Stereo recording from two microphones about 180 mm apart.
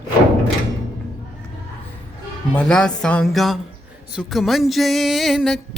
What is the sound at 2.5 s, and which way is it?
Music, 5° left (ahead or behind).